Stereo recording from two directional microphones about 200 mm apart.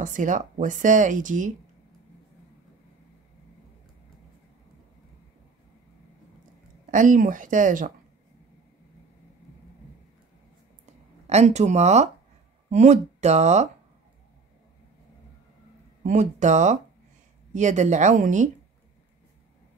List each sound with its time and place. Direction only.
0.0 s speech: 40° right (ahead or behind)
6.9 s speech: 40° right (ahead or behind)
11.2 s speech: 35° right (ahead or behind)
16.0 s speech: 40° right (ahead or behind)